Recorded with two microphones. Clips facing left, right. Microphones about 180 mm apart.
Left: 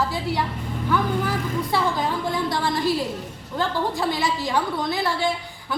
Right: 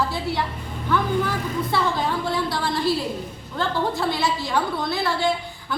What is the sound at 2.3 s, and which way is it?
A woman's voice, 20° left (ahead or behind).